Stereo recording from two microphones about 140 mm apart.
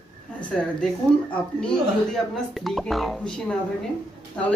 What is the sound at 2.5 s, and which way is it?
A woman's voice, centre (ahead or behind).